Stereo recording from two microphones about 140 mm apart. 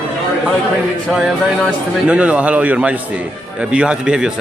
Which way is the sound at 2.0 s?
10° right (ahead or behind).